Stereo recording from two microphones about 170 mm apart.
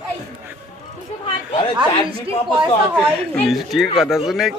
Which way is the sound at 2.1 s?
30° right (ahead or behind).